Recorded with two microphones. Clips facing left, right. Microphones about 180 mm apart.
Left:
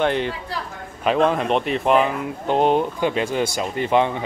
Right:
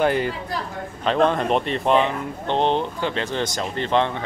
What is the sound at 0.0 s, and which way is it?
Speech, 5° right (ahead or behind).